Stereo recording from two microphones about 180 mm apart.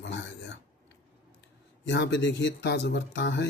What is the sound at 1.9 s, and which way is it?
Speech, 80° left.